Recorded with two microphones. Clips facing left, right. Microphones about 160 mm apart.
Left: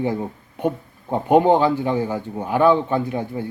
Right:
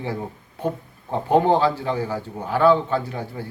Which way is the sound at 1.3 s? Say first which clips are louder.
Left 3 dB; 15° left (ahead or behind).